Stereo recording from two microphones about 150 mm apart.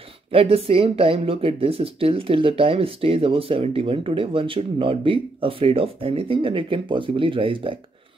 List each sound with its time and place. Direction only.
0.3 s speech: 40° right (ahead or behind)